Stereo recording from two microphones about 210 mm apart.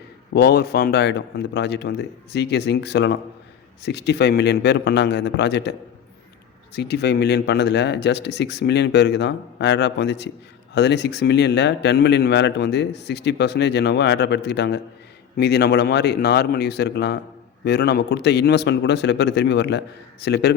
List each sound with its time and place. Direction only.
0.3 s speech: 50° left (ahead or behind)
6.7 s speech: 50° left (ahead or behind)